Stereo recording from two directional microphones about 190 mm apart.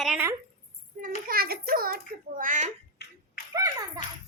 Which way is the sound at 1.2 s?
55° right (ahead or behind).